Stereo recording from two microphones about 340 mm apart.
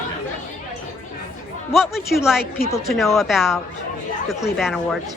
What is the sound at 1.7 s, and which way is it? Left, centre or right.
Speech, centre.